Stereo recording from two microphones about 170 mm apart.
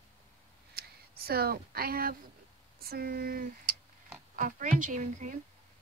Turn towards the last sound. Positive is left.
turn(degrees=-45)  # may be behind; listen again after turning